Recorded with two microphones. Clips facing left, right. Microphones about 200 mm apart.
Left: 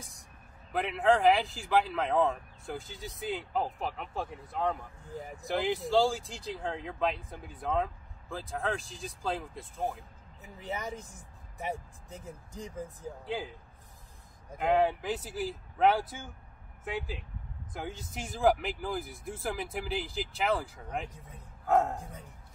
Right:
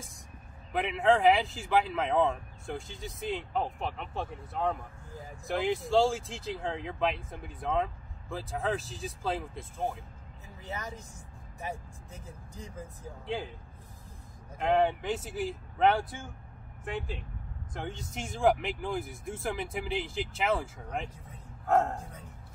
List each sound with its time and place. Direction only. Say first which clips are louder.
0.7 s speech: right 1 dB; centre (ahead or behind)
5.1 s speech: left 5 dB; 15° left (ahead or behind)
5.4 s speech: right 1 dB; centre (ahead or behind)
10.4 s speech: left 3 dB; 20° left (ahead or behind)
13.2 s speech: right 1 dB; centre (ahead or behind)
14.6 s speech: even; centre (ahead or behind)